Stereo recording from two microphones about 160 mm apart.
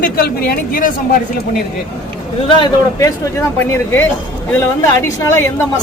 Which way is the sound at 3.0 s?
20° left (ahead or behind).